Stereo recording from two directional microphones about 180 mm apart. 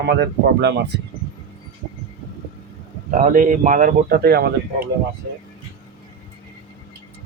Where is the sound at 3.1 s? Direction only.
45° right (ahead or behind); by 4.5 s 60° right (ahead or behind).